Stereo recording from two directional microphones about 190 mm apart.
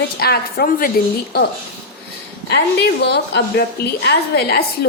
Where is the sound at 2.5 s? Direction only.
60° left (ahead or behind).